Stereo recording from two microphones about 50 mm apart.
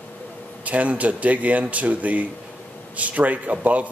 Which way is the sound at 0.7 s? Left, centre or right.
Right.